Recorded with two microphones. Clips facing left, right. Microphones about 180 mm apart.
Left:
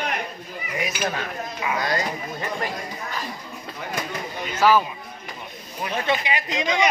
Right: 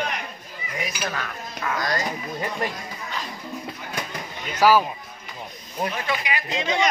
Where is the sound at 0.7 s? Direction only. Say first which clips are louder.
Left 3 dB; 15° left (ahead or behind).